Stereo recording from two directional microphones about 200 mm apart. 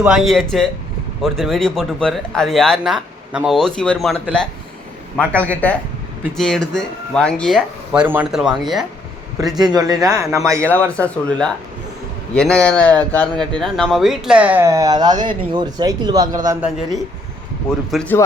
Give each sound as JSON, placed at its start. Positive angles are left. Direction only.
{"t": 0.0, "sound": "speech", "side_deg": 0}
{"t": 9.6, "sound": "a man's voice", "side_deg": -20}
{"t": 10.7, "sound": "a man's voice", "side_deg": 5}
{"t": 16.6, "sound": "speech", "side_deg": -5}
{"t": 17.9, "sound": "speech", "side_deg": 5}